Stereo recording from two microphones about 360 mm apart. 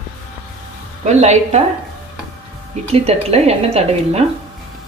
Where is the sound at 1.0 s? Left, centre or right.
Centre.